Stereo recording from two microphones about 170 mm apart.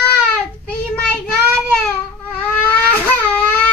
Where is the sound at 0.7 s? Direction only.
5° left (ahead or behind).